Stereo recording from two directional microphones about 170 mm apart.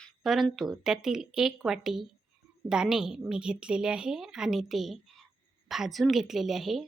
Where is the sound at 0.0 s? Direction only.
Centre (ahead or behind).